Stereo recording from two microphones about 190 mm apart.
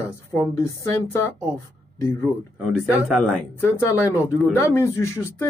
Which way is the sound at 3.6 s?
15° left (ahead or behind).